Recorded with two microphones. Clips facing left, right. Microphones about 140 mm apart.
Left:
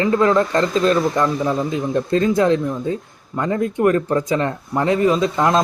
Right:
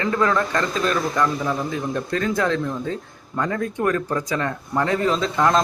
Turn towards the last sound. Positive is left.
turn(degrees=20)  # may be behind; listen again after turning